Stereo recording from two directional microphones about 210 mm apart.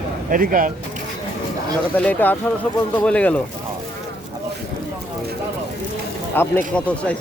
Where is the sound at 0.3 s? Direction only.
40° right (ahead or behind).